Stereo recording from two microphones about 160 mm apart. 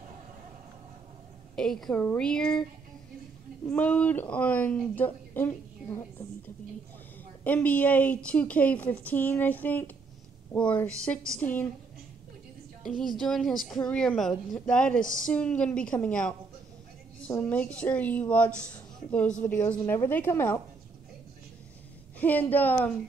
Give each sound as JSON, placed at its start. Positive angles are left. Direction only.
{"t": 1.5, "sound": "speech", "side_deg": 5}
{"t": 3.6, "sound": "speech", "side_deg": 10}
{"t": 13.0, "sound": "speech", "side_deg": 5}
{"t": 22.2, "sound": "speech", "side_deg": 10}